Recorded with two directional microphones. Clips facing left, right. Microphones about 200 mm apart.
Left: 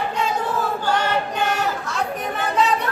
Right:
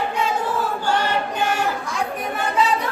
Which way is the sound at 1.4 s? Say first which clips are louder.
Even; 10° right (ahead or behind).